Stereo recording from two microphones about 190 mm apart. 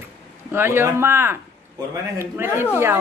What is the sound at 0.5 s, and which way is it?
A woman's voice, 10° right (ahead or behind).